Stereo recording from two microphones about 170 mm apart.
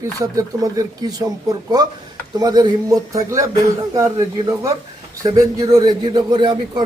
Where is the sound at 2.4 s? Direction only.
25° right (ahead or behind).